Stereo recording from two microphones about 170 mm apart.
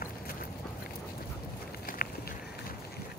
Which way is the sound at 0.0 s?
60° left (ahead or behind).